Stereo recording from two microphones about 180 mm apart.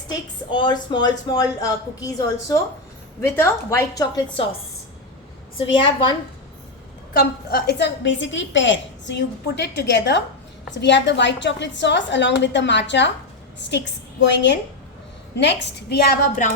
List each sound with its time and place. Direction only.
0.5 s a woman's voice: 25° left (ahead or behind)
7.1 s a woman's voice: 60° left (ahead or behind)